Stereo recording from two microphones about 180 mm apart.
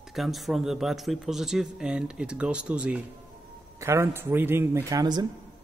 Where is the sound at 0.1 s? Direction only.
Centre (ahead or behind).